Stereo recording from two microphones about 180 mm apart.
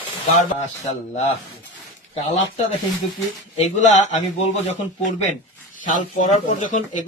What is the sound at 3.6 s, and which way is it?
Speech, 40° left (ahead or behind).